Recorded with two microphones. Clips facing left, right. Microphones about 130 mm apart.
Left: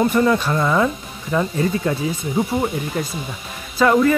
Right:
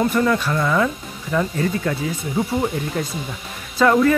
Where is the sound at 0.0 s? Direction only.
20° left (ahead or behind).